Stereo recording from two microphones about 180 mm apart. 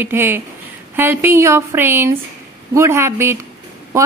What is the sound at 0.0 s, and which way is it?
Speech, 10° right (ahead or behind).